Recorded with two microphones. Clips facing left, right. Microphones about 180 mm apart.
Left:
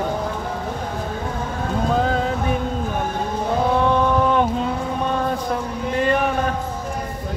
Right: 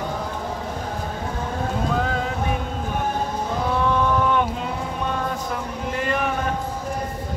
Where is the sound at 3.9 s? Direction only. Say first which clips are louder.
Left 3 dB; 35° left (ahead or behind).